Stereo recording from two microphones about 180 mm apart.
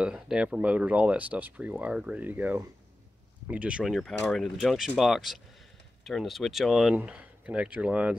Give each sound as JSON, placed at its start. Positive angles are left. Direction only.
{"t": 0.0, "sound": "speech", "side_deg": -5}